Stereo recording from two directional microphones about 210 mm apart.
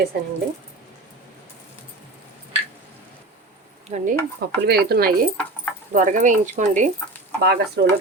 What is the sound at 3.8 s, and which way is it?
Speech, 35° right (ahead or behind).